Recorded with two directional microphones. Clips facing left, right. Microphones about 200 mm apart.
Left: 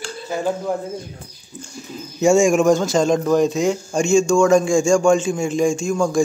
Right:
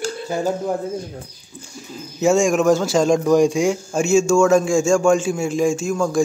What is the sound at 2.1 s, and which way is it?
A man's voice, centre (ahead or behind).